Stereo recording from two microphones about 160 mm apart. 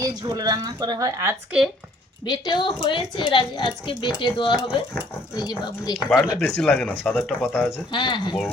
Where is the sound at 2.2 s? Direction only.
25° left (ahead or behind).